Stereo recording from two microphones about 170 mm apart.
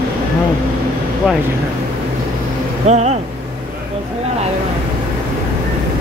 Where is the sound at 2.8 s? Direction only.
40° right (ahead or behind).